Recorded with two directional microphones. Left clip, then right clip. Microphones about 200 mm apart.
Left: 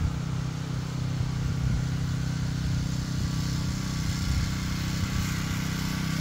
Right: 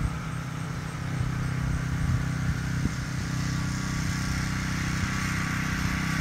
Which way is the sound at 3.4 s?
45° left (ahead or behind).